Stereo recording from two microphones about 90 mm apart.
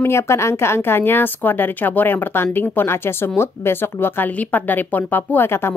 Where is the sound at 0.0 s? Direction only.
30° left (ahead or behind).